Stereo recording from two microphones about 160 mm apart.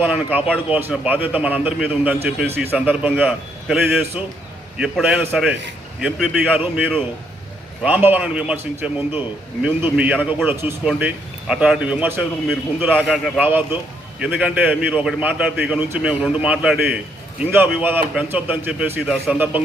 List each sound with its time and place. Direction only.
0.0 s a man's voice: 10° right (ahead or behind)